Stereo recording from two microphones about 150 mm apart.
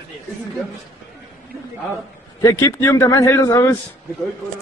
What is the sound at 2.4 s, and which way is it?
A man's voice, 20° left (ahead or behind).